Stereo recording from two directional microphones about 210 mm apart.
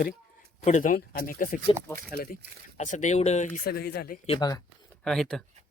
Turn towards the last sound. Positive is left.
turn(degrees=0)  # may be behind; listen again after turning